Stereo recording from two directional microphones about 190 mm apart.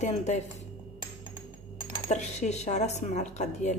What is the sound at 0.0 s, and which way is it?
Speech, 40° left (ahead or behind).